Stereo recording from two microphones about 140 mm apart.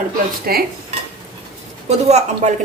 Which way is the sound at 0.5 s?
90° right.